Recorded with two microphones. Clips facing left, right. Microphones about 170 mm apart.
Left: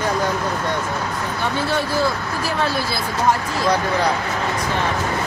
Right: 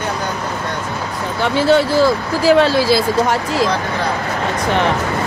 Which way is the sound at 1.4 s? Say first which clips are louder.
Right 10 dB; 90° right.